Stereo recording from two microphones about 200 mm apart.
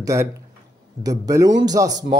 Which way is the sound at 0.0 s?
15° right (ahead or behind).